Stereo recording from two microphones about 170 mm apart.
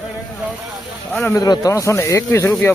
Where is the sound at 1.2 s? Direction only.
20° left (ahead or behind).